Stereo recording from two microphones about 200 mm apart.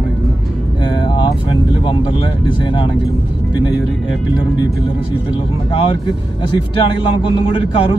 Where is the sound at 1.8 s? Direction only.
25° left (ahead or behind).